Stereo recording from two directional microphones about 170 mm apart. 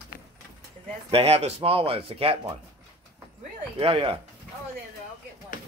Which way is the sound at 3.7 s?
35° right (ahead or behind).